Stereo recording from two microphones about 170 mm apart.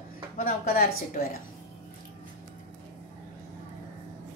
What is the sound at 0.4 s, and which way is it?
A woman's voice, 60° left (ahead or behind).